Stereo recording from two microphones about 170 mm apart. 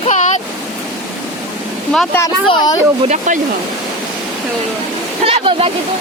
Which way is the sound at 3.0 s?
45° right (ahead or behind).